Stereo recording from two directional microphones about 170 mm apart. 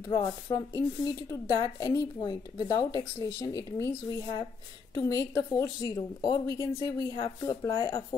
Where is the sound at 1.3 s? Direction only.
20° left (ahead or behind).